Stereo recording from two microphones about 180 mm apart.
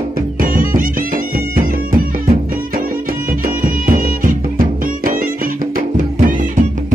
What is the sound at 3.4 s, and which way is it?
Music, 50° right (ahead or behind).